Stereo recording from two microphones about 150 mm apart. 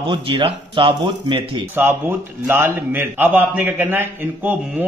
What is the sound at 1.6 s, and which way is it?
A man's voice, 15° right (ahead or behind).